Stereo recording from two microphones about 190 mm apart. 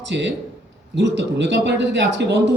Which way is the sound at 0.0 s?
70° right (ahead or behind).